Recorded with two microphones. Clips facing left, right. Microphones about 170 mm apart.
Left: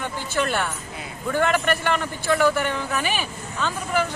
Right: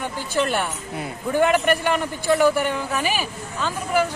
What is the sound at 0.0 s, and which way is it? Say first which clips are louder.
A woman's voice: right 2 dB; 15° right (ahead or behind).